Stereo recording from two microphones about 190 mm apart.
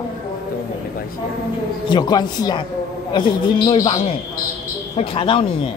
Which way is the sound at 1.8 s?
25° left (ahead or behind).